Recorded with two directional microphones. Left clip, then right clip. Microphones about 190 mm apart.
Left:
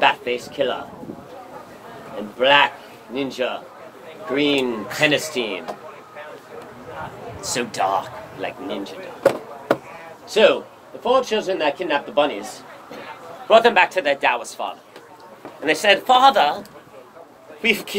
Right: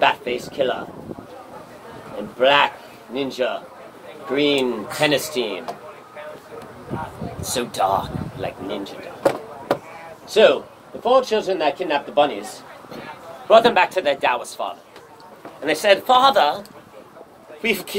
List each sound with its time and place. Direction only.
0.0 s speech: 15° left (ahead or behind)
2.3 s speech: 15° left (ahead or behind)
7.5 s speech: 15° left (ahead or behind)
10.3 s speech: 15° left (ahead or behind)
13.5 s speech: 20° left (ahead or behind)
17.6 s speech: 25° left (ahead or behind)